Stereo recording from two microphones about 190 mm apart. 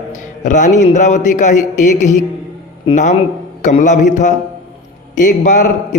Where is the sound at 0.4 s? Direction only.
40° left (ahead or behind).